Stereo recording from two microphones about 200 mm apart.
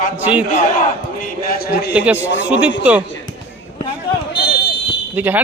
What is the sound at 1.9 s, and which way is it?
A man's voice, 5° right (ahead or behind).